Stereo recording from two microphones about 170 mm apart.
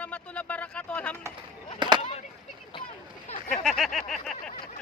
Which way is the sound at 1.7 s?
25° right (ahead or behind).